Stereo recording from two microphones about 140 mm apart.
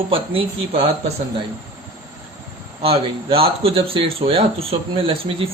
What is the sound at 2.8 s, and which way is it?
Speech, 40° right (ahead or behind).